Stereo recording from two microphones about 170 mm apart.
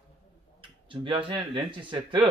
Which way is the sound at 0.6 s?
30° right (ahead or behind).